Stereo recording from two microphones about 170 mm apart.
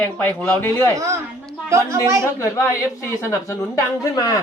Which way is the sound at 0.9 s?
15° right (ahead or behind).